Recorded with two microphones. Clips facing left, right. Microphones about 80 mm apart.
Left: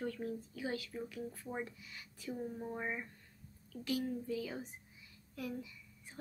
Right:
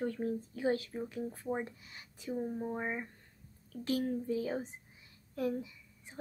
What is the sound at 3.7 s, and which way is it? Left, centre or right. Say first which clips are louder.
Speech: right 4 dB; right.